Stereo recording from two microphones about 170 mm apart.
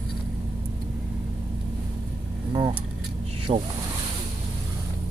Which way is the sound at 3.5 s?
35° right (ahead or behind).